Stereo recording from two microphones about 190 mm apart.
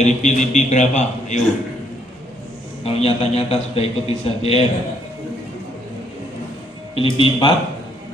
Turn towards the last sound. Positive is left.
turn(degrees=25)  # may be behind; listen again after turning